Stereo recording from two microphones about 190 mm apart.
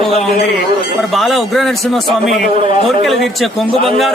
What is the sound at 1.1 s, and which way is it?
A man's voice, centre (ahead or behind).